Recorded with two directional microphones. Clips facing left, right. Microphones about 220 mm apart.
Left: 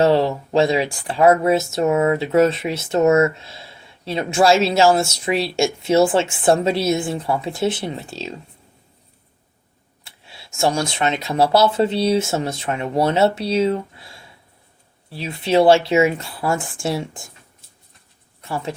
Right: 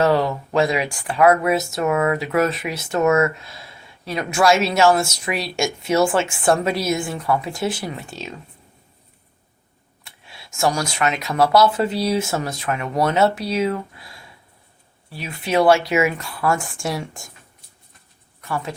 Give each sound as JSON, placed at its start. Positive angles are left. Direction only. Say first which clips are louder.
{"t": 0.0, "sound": "speech", "louder": "left 2 dB", "side_deg": 30}
{"t": 10.0, "sound": "speech", "louder": "even", "side_deg": 30}
{"t": 18.4, "sound": "speech", "louder": "even", "side_deg": 25}